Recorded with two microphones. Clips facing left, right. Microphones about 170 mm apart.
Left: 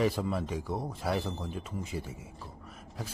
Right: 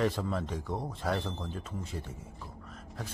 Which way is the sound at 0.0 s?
10° left (ahead or behind).